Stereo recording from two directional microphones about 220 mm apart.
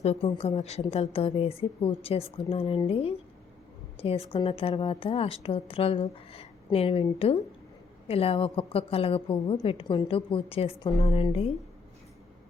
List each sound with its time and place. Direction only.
0.0 s a woman's voice: 25° left (ahead or behind)